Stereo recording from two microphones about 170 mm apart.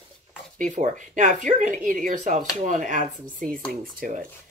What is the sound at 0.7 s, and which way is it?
Speech, 45° right (ahead or behind).